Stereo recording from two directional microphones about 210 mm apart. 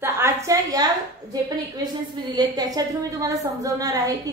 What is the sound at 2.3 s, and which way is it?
A woman's voice, 20° right (ahead or behind).